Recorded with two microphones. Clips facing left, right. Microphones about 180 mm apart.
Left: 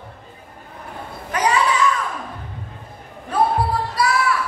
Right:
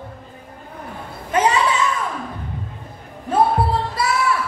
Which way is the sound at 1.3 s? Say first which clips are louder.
Right 4 dB; 25° right (ahead or behind).